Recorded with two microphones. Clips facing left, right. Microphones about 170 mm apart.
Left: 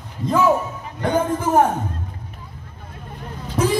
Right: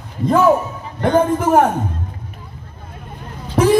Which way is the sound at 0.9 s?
60° right (ahead or behind).